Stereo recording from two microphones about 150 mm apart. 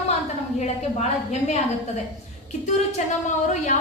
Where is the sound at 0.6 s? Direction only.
50° left (ahead or behind).